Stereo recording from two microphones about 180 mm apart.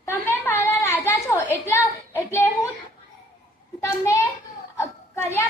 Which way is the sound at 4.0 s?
15° left (ahead or behind).